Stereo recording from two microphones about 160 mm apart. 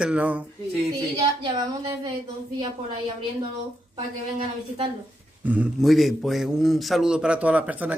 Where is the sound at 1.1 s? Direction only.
25° right (ahead or behind).